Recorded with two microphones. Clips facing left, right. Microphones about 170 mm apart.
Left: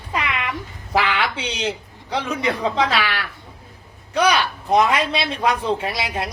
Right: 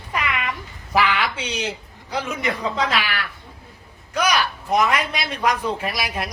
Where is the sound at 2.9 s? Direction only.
30° left (ahead or behind).